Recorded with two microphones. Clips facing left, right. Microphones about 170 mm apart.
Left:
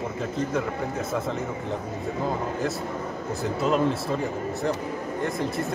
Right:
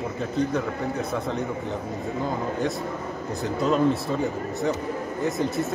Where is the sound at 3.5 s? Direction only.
Centre (ahead or behind).